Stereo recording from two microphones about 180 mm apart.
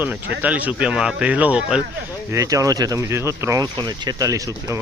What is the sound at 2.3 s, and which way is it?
Speech, 20° right (ahead or behind).